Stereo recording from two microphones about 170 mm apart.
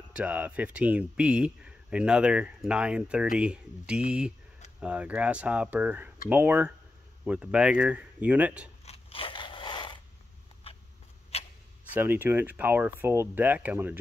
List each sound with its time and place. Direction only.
0.1 s speech: 10° right (ahead or behind)
8.8 s biting: 35° left (ahead or behind)
11.3 s a sound: 35° left (ahead or behind)
11.9 s speech: 10° right (ahead or behind)